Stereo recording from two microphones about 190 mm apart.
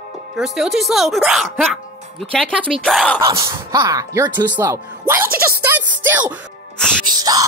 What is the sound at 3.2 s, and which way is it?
Speech, 15° right (ahead or behind).